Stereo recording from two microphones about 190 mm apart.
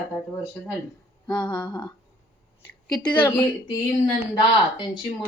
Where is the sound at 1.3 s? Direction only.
20° left (ahead or behind).